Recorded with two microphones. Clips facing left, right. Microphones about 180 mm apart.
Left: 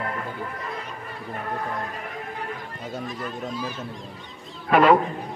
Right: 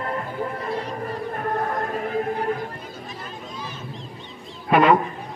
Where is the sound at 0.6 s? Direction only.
35° right (ahead or behind).